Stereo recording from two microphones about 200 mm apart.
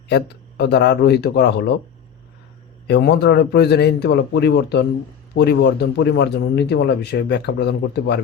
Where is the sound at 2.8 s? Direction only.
55° left (ahead or behind).